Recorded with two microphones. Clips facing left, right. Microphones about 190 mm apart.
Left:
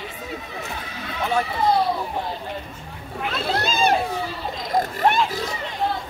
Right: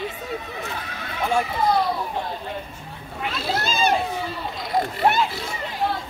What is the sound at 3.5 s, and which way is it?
Speech, centre (ahead or behind).